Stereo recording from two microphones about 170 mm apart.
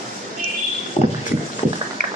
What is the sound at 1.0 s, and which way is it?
Vehicle, 35° left (ahead or behind).